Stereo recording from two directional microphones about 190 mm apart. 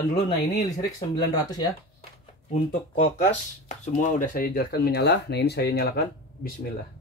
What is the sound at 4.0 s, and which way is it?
Speech, 45° left (ahead or behind).